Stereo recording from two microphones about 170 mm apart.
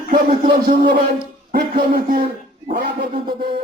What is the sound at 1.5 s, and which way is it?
Speech, 55° right (ahead or behind).